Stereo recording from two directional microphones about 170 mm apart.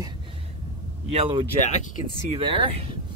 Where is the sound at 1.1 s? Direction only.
35° right (ahead or behind).